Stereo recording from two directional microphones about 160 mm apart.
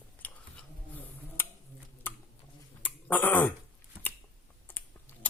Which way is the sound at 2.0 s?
10° left (ahead or behind).